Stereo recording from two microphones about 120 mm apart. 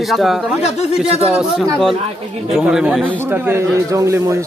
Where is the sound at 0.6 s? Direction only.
60° left (ahead or behind).